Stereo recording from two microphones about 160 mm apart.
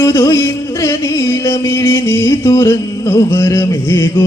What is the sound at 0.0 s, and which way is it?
Music, 20° left (ahead or behind).